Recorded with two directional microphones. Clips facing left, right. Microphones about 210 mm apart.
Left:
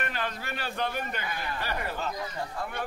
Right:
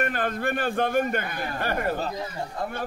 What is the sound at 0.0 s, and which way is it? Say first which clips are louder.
A man's voice: right 8 dB; 50° right (ahead or behind).